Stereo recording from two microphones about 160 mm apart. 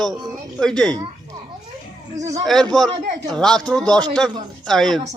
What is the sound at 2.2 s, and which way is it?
Speech, 40° right (ahead or behind).